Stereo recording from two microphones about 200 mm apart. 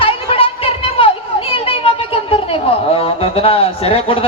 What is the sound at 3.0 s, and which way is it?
Speech, 30° left (ahead or behind).